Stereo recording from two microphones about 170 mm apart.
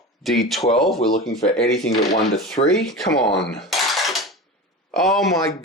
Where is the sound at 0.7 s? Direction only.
Centre (ahead or behind).